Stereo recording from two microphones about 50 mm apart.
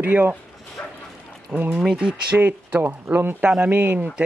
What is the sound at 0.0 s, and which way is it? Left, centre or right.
Speech, right.